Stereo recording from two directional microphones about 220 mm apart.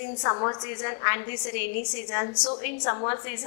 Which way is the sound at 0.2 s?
25° left (ahead or behind).